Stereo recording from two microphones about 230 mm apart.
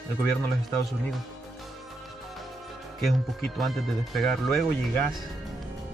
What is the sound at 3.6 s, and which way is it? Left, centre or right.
Speech, centre.